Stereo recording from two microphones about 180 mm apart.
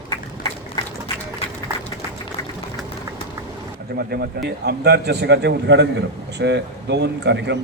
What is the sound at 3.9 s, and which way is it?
A man's voice, 65° right (ahead or behind).